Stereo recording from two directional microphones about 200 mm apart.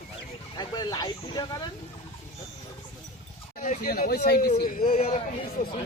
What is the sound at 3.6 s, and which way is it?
Speech, 40° left (ahead or behind).